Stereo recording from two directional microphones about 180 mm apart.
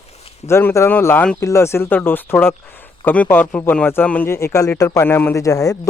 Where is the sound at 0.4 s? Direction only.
15° left (ahead or behind).